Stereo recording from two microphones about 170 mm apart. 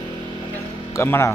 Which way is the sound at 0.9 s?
15° left (ahead or behind).